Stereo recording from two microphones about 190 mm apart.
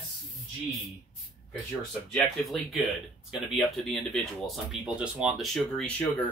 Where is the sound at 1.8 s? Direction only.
Centre (ahead or behind).